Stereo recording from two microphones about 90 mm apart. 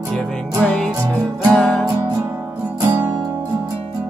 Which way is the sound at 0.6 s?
10° left (ahead or behind).